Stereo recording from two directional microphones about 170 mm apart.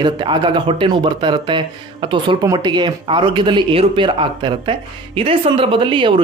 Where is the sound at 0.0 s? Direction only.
25° right (ahead or behind).